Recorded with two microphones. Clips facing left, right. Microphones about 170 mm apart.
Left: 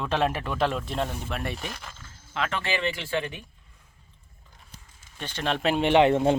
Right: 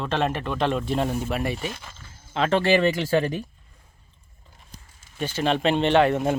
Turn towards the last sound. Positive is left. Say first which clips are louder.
# left 2 dB
turn(degrees=25)  # may be behind; listen again after turning